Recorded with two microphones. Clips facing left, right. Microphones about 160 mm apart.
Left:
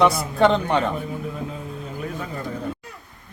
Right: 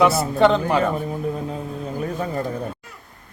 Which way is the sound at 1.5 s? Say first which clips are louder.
Right 4 dB; 40° right (ahead or behind).